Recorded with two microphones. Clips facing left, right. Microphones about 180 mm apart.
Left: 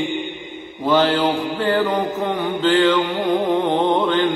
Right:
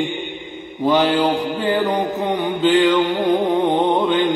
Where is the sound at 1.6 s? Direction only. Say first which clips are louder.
Left 1 dB; 15° right (ahead or behind).